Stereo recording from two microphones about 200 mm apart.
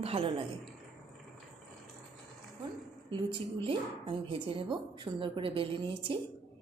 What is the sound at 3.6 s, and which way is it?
A woman's voice, 25° right (ahead or behind).